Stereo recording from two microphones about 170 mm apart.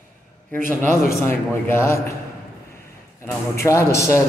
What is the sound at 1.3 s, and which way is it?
Speech, 15° left (ahead or behind).